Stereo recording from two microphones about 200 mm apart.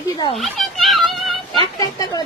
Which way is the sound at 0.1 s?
25° left (ahead or behind).